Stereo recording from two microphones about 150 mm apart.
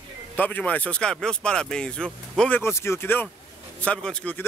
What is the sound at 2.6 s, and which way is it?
Speech, 15° left (ahead or behind).